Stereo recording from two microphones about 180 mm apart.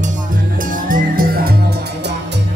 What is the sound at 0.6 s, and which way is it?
Music, 50° right (ahead or behind).